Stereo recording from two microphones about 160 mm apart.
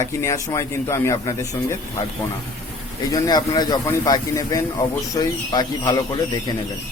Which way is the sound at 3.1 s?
25° left (ahead or behind).